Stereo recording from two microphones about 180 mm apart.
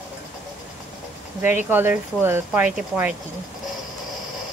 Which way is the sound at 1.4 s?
40° left (ahead or behind).